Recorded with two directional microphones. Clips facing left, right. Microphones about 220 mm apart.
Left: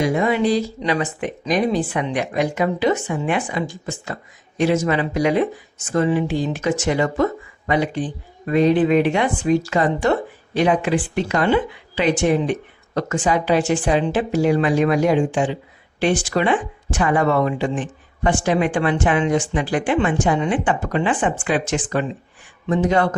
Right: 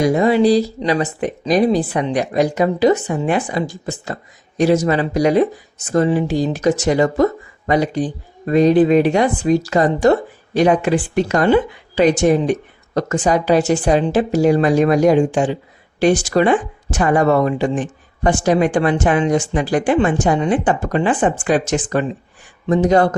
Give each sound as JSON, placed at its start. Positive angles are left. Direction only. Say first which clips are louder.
{"t": 0.0, "sound": "speech", "louder": "right 5 dB", "side_deg": -35}